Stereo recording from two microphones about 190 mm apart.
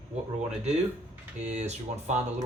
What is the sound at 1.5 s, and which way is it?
Speech, 35° right (ahead or behind).